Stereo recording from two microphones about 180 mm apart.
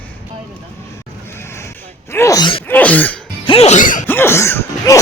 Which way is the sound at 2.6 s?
10° left (ahead or behind).